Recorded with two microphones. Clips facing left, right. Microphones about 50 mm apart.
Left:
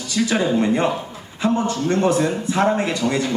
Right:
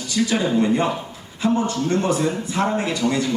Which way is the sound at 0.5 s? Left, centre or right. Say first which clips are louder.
Left 1 dB; left.